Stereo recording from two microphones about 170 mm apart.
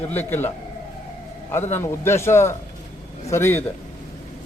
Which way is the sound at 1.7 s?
15° left (ahead or behind).